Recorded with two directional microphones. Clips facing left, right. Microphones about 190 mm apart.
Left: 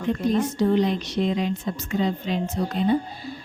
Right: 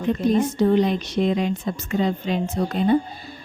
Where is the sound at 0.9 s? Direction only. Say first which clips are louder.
Right 2 dB; 55° right (ahead or behind).